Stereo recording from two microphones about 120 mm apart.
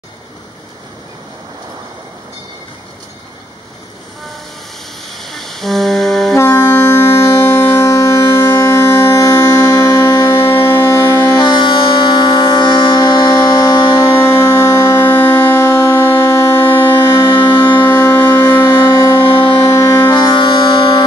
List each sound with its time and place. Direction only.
5.1 s music: centre (ahead or behind)
6.3 s a sound: 20° left (ahead or behind)
11.3 s music: 40° left (ahead or behind)
14.1 s music: 20° left (ahead or behind)
17.8 s civil defense siren: 20° left (ahead or behind)
18.6 s music: 35° left (ahead or behind)
19.7 s music: 25° left (ahead or behind)
20.1 s music: 40° left (ahead or behind)